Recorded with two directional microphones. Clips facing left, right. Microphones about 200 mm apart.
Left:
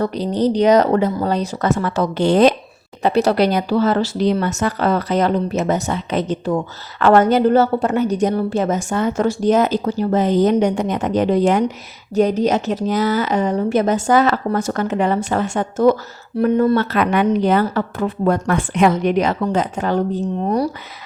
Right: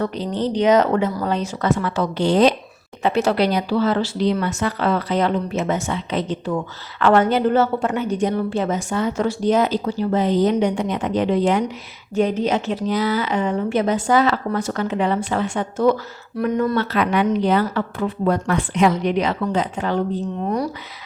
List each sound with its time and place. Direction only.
0.3 s a woman's voice: 40° left (ahead or behind)
3.0 s a woman's voice: 35° left (ahead or behind)
16.4 s speech: 30° left (ahead or behind)
16.7 s a woman's voice: 50° left (ahead or behind)